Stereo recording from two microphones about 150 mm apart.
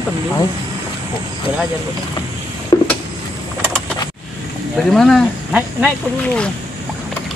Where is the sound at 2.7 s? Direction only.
25° left (ahead or behind).